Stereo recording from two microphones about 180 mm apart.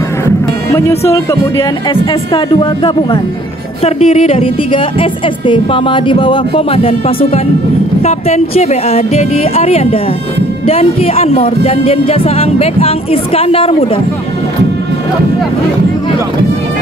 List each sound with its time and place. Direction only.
0.7 s speech: 15° left (ahead or behind)
2.3 s a woman's voice: 25° left (ahead or behind)